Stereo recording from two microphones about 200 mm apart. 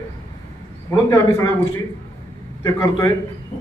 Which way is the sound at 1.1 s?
15° left (ahead or behind).